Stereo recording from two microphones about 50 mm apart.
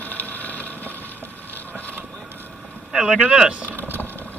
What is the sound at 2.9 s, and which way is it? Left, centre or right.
Speech, centre.